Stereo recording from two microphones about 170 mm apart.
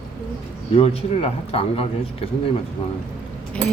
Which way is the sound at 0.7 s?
35° left (ahead or behind).